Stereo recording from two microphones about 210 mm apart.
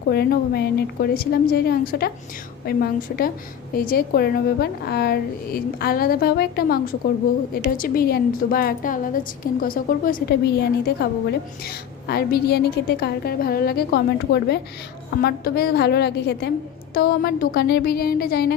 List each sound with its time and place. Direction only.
0.1 s a woman's voice: 50° left (ahead or behind)